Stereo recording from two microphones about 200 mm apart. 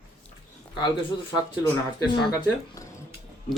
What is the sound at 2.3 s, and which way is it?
Speech, 20° left (ahead or behind).